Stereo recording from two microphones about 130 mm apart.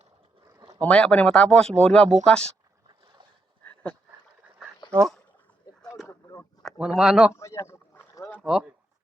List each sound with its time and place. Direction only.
0.8 s speech: 10° left (ahead or behind)
3.6 s dog: 10° left (ahead or behind)
4.9 s speech: 10° left (ahead or behind)
6.1 s a sound: 25° left (ahead or behind)
6.7 s speech: 5° right (ahead or behind)
7.3 s a sound: 20° left (ahead or behind)
8.4 s speech: 5° right (ahead or behind)